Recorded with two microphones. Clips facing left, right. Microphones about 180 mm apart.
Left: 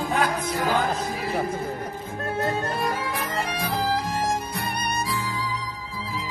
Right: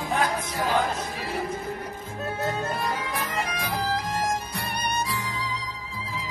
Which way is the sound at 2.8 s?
30° left (ahead or behind).